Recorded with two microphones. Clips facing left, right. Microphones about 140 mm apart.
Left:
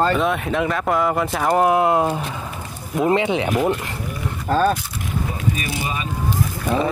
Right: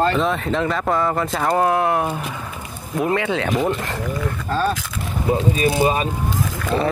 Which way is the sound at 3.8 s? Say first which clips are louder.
Right 4 dB; 90° right.